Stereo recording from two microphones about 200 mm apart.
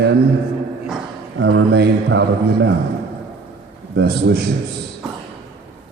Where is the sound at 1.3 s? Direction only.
65° right (ahead or behind).